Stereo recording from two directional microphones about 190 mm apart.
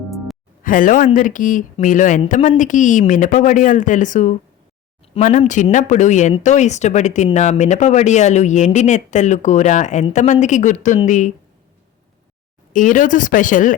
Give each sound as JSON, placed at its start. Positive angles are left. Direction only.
{"t": 0.6, "sound": "speech", "side_deg": 45}
{"t": 12.7, "sound": "speech", "side_deg": 45}